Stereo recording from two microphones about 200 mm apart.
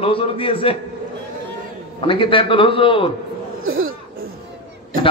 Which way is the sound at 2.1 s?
25° left (ahead or behind).